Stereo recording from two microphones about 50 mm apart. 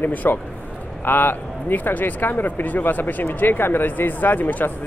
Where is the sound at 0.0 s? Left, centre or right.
Left.